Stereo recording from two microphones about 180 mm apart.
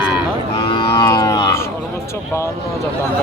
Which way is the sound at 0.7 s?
25° left (ahead or behind).